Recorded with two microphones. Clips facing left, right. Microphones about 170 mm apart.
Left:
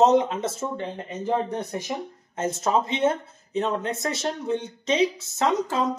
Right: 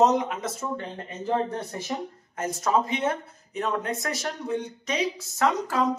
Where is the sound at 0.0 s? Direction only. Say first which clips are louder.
Left 3 dB; 25° left (ahead or behind).